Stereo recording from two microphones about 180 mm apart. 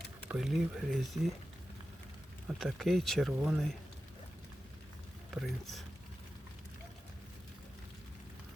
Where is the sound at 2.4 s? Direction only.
Centre (ahead or behind).